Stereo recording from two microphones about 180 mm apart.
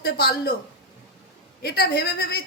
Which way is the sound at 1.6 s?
65° left (ahead or behind).